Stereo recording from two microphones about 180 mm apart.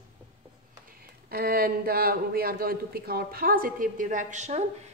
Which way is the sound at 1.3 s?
55° right (ahead or behind).